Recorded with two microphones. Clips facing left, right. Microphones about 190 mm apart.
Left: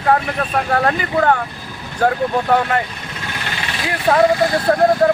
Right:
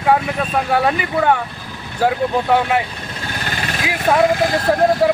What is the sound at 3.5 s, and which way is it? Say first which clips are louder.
Vehicle: right 1 dB; 45° right (ahead or behind).